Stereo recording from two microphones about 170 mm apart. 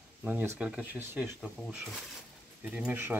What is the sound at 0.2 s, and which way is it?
Speech, 10° right (ahead or behind).